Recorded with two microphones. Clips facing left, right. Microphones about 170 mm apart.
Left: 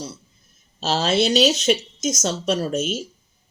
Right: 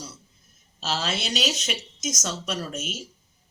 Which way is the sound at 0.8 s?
30° left (ahead or behind).